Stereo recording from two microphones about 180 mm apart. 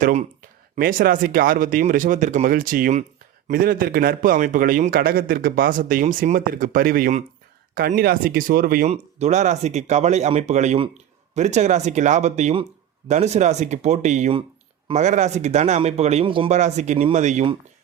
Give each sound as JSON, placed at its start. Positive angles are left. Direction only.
{"t": 0.0, "sound": "speech", "side_deg": -40}
{"t": 0.8, "sound": "a man's voice", "side_deg": -50}
{"t": 8.9, "sound": "speech", "side_deg": -40}
{"t": 16.5, "sound": "speech", "side_deg": -40}